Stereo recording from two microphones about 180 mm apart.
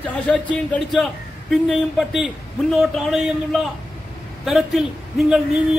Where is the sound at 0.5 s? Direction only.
5° left (ahead or behind).